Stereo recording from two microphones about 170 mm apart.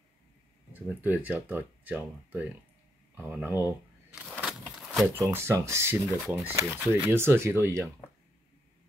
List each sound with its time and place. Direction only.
0.7 s speech: 10° right (ahead or behind)
3.2 s a sound: 10° right (ahead or behind)
5.2 s speech: 15° right (ahead or behind)